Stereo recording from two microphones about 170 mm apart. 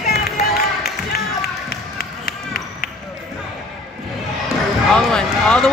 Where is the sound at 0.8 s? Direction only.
65° left (ahead or behind).